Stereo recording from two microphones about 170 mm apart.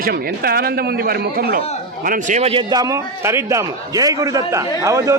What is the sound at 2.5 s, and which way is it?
A man's voice, 25° right (ahead or behind).